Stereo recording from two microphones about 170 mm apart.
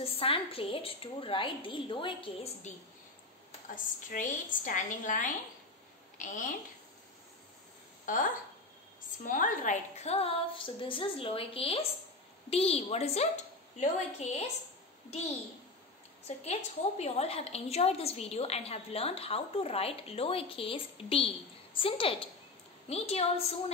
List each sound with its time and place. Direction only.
0.0 s a woman's voice: 35° left (ahead or behind)
3.6 s a woman's voice: 50° left (ahead or behind)
8.0 s a sound: 50° left (ahead or behind)
9.2 s a woman's voice: 50° left (ahead or behind)
16.3 s a woman's voice: 45° left (ahead or behind)